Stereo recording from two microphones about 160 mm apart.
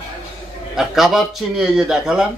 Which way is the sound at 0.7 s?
Centre (ahead or behind).